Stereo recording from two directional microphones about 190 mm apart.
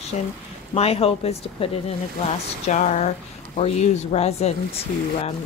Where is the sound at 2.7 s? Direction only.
40° left (ahead or behind).